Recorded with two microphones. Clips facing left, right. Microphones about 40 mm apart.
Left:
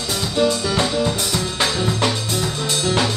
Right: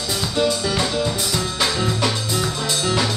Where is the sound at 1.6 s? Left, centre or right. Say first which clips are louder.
Left 1 dB; centre.